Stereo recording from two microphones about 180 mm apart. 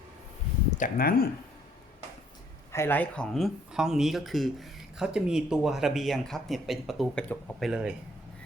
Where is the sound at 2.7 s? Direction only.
10° left (ahead or behind).